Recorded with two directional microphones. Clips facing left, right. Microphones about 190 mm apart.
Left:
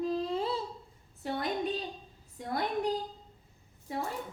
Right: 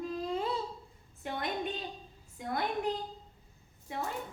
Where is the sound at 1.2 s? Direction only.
35° left (ahead or behind).